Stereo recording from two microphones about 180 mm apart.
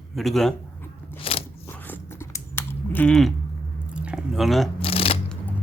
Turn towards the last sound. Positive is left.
turn(degrees=30)  # may be behind; listen again after turning